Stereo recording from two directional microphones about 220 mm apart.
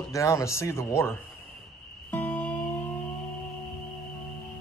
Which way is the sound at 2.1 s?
5° left (ahead or behind).